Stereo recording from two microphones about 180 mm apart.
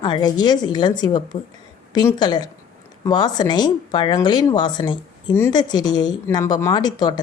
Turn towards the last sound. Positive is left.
turn(degrees=20)  # may be behind; listen again after turning